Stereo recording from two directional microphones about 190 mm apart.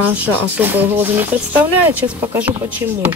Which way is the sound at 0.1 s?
10° right (ahead or behind).